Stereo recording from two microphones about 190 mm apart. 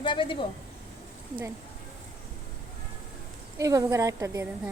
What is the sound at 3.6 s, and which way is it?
Speech, 15° right (ahead or behind).